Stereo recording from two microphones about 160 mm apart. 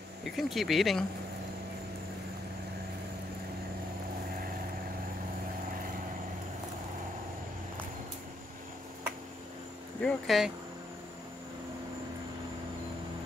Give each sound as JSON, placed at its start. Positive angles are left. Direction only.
{"t": 0.2, "sound": "speech", "side_deg": 0}
{"t": 10.0, "sound": "speech", "side_deg": 0}